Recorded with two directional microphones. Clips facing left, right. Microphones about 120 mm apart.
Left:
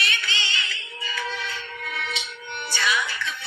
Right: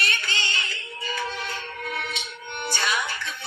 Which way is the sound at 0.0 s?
45° right (ahead or behind).